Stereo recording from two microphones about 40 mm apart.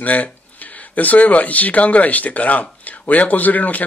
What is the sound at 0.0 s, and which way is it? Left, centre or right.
Speech, left.